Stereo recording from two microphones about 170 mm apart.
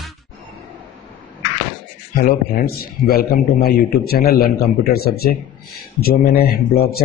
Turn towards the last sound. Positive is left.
turn(degrees=65)  # may be behind; listen again after turning